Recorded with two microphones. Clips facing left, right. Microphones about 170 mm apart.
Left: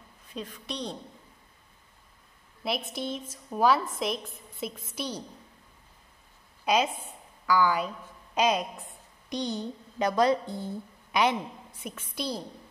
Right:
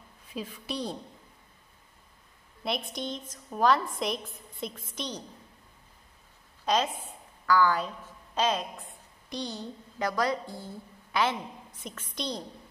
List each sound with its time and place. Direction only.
0.3 s a woman's voice: 5° right (ahead or behind)
2.6 s a woman's voice: 5° left (ahead or behind)
6.6 s a woman's voice: 10° left (ahead or behind)